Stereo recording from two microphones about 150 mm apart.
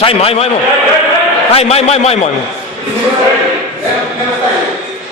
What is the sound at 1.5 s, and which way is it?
Speech, 45° left (ahead or behind).